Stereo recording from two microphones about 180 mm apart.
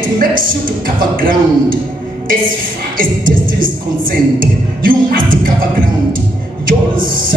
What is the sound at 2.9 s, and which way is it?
Speech, 50° right (ahead or behind).